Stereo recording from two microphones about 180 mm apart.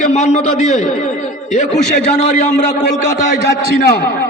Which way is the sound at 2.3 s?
55° left (ahead or behind).